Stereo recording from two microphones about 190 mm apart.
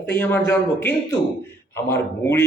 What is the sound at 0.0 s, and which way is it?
A man's voice, 10° left (ahead or behind).